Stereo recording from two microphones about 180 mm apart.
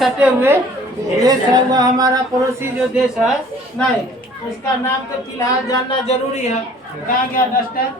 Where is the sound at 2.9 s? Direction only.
5° right (ahead or behind).